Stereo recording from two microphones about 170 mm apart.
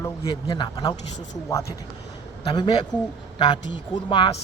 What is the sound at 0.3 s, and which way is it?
A man's voice, 30° left (ahead or behind).